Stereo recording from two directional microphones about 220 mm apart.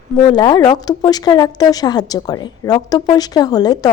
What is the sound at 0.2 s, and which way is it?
A woman's voice, 20° left (ahead or behind).